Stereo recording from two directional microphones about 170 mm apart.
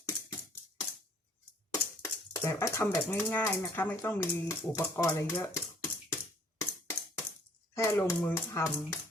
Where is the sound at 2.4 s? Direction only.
15° left (ahead or behind).